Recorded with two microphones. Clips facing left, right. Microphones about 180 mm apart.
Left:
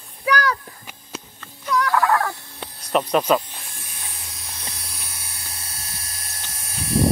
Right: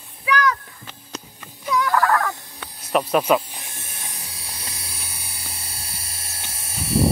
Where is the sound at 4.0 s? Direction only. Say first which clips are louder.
Right 1 dB; 15° right (ahead or behind).